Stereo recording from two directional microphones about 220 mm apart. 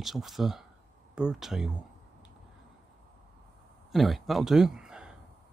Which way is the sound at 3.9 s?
Centre (ahead or behind).